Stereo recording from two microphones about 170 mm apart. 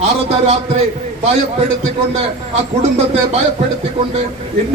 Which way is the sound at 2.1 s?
40° right (ahead or behind).